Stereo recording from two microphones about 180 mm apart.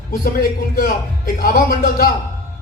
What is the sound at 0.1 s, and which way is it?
A man's voice, 50° left (ahead or behind).